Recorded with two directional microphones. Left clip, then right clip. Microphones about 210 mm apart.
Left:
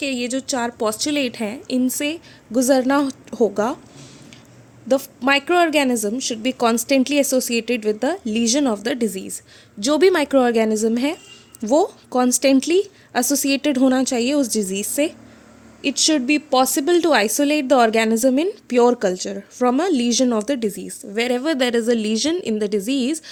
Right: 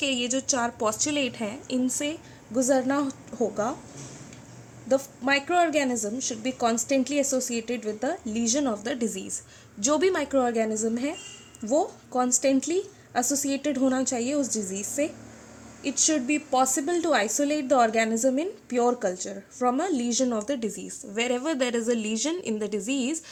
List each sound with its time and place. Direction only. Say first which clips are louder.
0.0 s a woman's voice: left 3 dB; 35° left (ahead or behind); by 3.8 s 50° left (ahead or behind)
4.9 s a woman's voice: left 6 dB; 50° left (ahead or behind)